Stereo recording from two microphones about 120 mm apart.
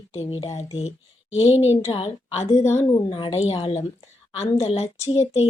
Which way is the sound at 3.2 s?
55° left (ahead or behind).